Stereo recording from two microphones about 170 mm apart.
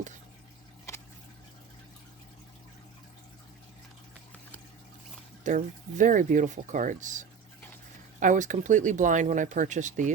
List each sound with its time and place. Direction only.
5.4 s speech: 50° right (ahead or behind)